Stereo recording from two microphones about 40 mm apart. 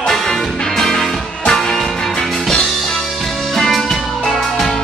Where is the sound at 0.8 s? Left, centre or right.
Centre.